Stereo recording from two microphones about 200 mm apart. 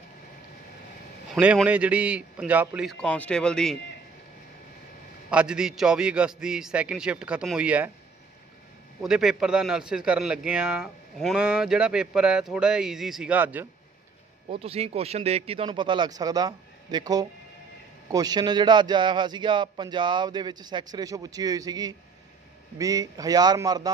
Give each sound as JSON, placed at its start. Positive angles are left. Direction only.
{"t": 1.3, "sound": "a man's voice", "side_deg": -5}
{"t": 5.3, "sound": "a man's voice", "side_deg": -5}
{"t": 9.0, "sound": "a man's voice", "side_deg": -5}
{"t": 14.5, "sound": "a man's voice", "side_deg": -30}